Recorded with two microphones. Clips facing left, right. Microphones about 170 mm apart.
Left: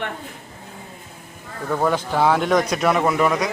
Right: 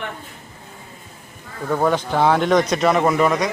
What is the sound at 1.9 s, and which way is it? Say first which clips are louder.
A man's voice: right 1 dB; 5° left (ahead or behind).